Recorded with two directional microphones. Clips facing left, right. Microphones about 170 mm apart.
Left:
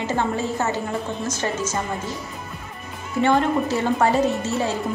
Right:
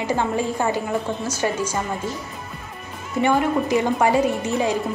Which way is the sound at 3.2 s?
10° right (ahead or behind).